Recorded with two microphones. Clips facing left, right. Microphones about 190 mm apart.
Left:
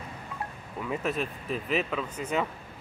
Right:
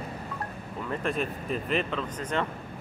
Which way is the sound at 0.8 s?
5° left (ahead or behind).